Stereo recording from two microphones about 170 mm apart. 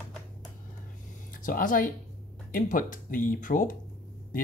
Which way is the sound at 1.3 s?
50° left (ahead or behind).